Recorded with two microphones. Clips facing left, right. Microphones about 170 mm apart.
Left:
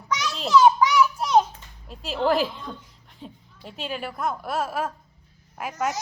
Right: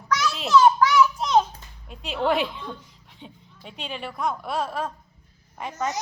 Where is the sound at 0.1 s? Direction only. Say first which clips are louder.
Right 1 dB; 15° left (ahead or behind).